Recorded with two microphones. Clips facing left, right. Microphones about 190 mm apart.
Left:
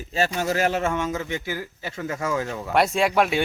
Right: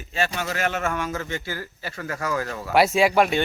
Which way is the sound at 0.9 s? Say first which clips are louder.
Left 2 dB; 20° left (ahead or behind).